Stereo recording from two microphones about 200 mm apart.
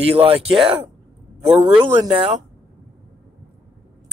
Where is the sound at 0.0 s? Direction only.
30° right (ahead or behind).